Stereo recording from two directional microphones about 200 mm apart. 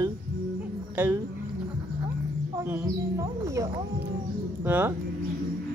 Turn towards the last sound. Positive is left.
turn(degrees=-10)  # may be behind; listen again after turning